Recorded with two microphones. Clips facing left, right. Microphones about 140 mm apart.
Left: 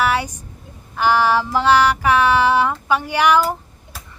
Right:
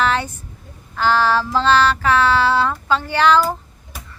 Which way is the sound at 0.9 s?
15° left (ahead or behind).